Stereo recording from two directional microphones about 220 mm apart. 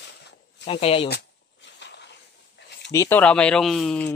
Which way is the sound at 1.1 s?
50° left (ahead or behind).